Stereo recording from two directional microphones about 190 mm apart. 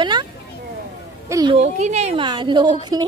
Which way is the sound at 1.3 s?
20° right (ahead or behind).